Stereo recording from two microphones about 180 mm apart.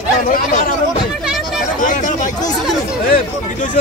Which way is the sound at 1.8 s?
45° left (ahead or behind).